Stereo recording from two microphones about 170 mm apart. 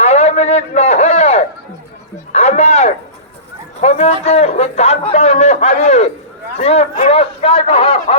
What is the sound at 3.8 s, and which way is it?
Speech, 40° left (ahead or behind).